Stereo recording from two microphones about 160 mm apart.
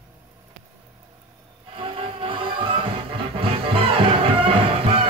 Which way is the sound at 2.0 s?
35° right (ahead or behind).